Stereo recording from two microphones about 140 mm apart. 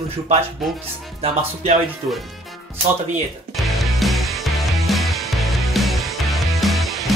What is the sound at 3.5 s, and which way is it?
Music, centre (ahead or behind).